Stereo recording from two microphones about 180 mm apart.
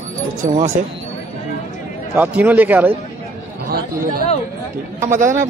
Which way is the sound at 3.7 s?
55° right (ahead or behind).